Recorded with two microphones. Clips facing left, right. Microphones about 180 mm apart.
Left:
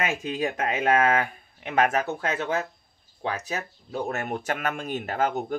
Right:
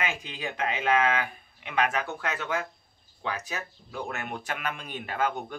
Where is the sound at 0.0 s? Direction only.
45° left (ahead or behind).